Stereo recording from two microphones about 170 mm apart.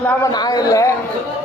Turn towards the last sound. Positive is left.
turn(degrees=20)  # may be behind; listen again after turning